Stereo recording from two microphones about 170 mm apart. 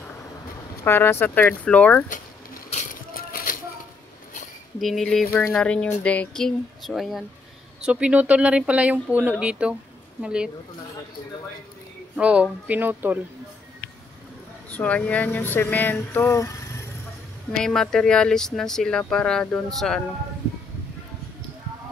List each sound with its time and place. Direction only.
0.8 s speech: 15° left (ahead or behind)
2.7 s a sound: 50° left (ahead or behind)
4.7 s speech: centre (ahead or behind)
5.3 s speech: 15° left (ahead or behind); by 10.5 s 5° right (ahead or behind)
12.2 s speech: 5° right (ahead or behind)
14.7 s speech: 10° left (ahead or behind)
17.5 s speech: 5° left (ahead or behind)